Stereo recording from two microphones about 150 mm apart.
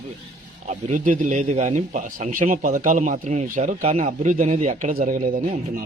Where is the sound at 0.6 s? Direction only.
55° right (ahead or behind).